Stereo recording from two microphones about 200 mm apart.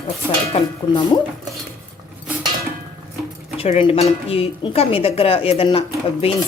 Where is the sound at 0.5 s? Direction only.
25° left (ahead or behind).